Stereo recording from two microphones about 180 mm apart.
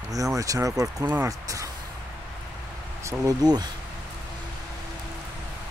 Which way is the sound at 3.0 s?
20° right (ahead or behind).